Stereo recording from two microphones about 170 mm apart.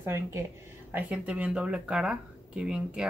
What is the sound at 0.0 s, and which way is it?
A woman's voice, 15° right (ahead or behind).